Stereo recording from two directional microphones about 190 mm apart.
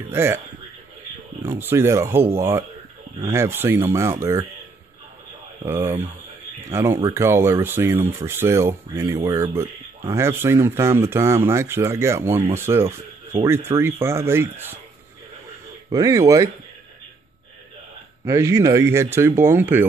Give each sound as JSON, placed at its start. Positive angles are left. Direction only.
{"t": 0.1, "sound": "speech", "side_deg": -15}
{"t": 1.4, "sound": "speech", "side_deg": -10}
{"t": 5.6, "sound": "speech", "side_deg": -15}
{"t": 15.9, "sound": "speech", "side_deg": -20}
{"t": 18.2, "sound": "speech", "side_deg": -15}